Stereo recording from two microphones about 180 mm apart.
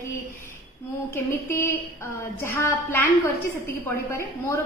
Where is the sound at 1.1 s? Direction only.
15° left (ahead or behind).